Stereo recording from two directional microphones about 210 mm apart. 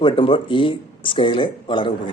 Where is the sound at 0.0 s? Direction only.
25° left (ahead or behind).